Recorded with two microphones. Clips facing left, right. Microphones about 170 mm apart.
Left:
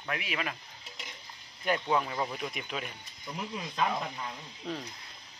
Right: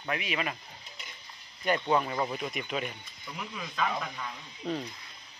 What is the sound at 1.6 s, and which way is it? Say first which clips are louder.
Speech: right 2 dB; centre (ahead or behind).